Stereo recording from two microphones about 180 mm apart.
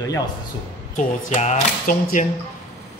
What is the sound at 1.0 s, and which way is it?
Speech, 40° left (ahead or behind).